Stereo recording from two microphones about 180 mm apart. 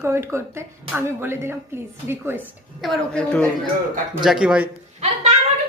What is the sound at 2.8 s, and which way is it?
A woman's voice, 5° left (ahead or behind).